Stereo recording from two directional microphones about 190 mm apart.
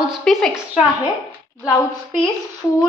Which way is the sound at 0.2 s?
Centre (ahead or behind).